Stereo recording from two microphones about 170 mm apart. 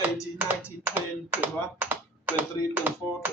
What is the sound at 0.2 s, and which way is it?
Speech, 10° right (ahead or behind).